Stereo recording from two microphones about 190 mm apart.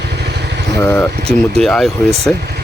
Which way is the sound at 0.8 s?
10° left (ahead or behind).